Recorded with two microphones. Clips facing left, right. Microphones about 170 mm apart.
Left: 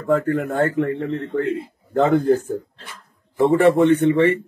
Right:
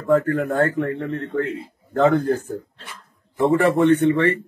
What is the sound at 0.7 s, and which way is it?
Speech, 20° left (ahead or behind).